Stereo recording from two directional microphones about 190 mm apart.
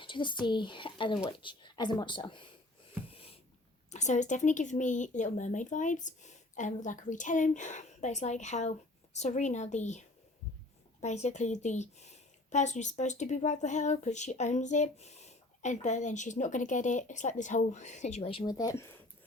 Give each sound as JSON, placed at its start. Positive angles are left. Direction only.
{"t": 0.0, "sound": "speech", "side_deg": 25}
{"t": 3.1, "sound": "a sound", "side_deg": 30}
{"t": 3.9, "sound": "a woman's voice", "side_deg": 40}
{"t": 11.0, "sound": "a woman's voice", "side_deg": 35}